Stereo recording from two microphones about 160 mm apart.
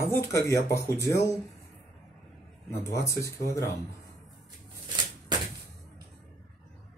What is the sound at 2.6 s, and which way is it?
Speech, 15° left (ahead or behind).